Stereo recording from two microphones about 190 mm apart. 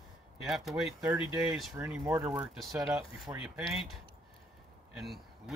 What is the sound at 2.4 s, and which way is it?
Speech, centre (ahead or behind).